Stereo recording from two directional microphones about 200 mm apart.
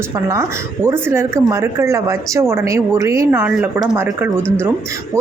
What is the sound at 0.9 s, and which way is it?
A woman's voice, 10° right (ahead or behind).